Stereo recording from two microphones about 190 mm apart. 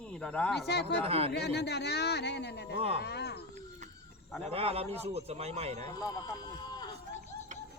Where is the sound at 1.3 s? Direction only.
60° left (ahead or behind).